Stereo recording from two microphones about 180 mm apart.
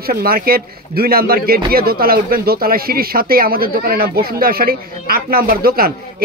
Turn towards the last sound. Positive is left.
turn(degrees=-55)  # may be behind; listen again after turning